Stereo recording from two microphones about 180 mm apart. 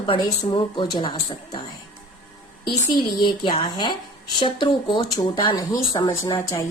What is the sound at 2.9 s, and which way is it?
Speech, 25° left (ahead or behind).